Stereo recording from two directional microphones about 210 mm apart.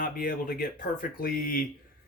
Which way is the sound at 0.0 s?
45° left (ahead or behind).